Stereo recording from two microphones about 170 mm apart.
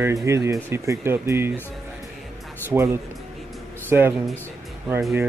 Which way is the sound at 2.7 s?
15° right (ahead or behind).